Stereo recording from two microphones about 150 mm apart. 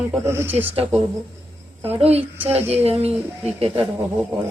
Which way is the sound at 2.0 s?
45° right (ahead or behind).